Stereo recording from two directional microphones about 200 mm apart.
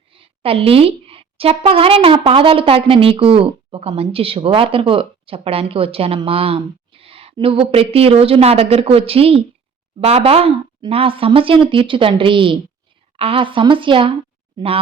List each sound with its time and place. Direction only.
0.1 s a woman's voice: 30° right (ahead or behind)